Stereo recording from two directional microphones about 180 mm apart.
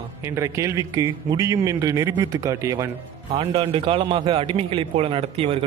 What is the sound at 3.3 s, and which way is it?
A man's voice, 30° right (ahead or behind).